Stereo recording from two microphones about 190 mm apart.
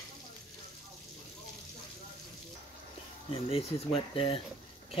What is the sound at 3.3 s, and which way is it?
Speech, 30° left (ahead or behind).